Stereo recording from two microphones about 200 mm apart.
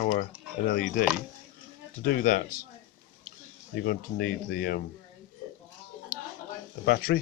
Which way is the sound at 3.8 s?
50° left (ahead or behind).